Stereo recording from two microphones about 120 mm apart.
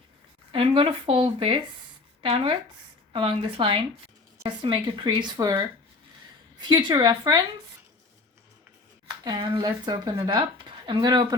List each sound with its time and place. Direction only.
0.5 s speech: 45° right (ahead or behind)
9.2 s speech: 35° right (ahead or behind)